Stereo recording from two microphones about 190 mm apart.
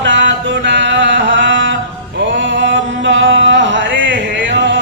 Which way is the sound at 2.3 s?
75° right (ahead or behind).